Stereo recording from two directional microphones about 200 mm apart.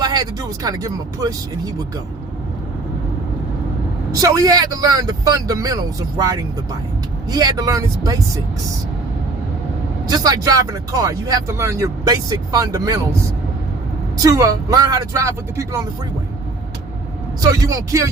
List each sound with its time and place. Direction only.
0.0 s speech: 20° right (ahead or behind)
4.1 s speech: 20° right (ahead or behind)
10.1 s speech: 20° right (ahead or behind)
14.2 s speech: 15° right (ahead or behind)
17.4 s speech: 15° right (ahead or behind)